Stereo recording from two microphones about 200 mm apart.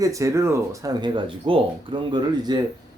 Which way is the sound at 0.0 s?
15° right (ahead or behind).